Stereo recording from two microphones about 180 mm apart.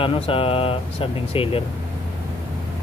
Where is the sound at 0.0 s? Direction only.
30° left (ahead or behind).